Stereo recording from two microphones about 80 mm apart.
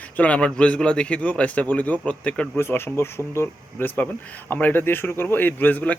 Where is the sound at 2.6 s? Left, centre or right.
Left.